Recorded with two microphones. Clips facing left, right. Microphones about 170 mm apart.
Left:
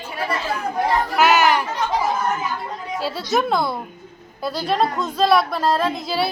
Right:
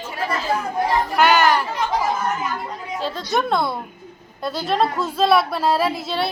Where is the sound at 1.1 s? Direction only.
5° left (ahead or behind).